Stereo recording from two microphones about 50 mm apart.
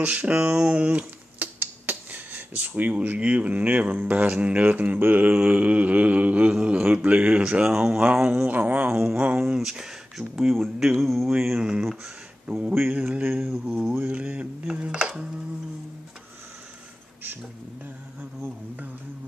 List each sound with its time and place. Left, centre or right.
0.0 s speech: right
1.4 s a sound: right
2.9 s speech: right
4.3 s speech: right
7.6 s speech: centre
8.5 s speech: right
9.7 s speech: centre
11.2 s speech: centre